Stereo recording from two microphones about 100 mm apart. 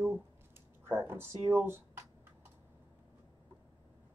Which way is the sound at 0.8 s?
25° right (ahead or behind).